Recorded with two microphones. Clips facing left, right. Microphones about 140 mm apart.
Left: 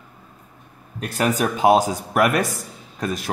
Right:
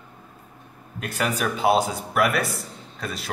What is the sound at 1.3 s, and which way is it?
Speech, 40° left (ahead or behind).